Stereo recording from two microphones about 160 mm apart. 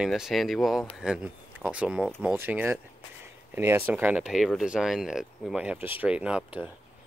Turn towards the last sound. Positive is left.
turn(degrees=-5)  # may be behind; listen again after turning